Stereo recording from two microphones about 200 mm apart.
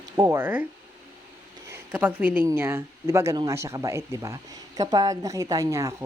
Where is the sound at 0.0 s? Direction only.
20° right (ahead or behind).